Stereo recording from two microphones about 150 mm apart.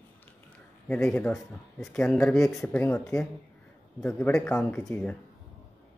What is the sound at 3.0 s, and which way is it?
Speech, 5° left (ahead or behind).